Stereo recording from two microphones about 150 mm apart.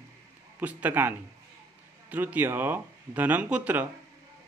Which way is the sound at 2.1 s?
10° right (ahead or behind).